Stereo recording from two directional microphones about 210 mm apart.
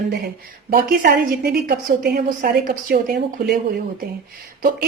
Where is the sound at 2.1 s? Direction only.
45° right (ahead or behind).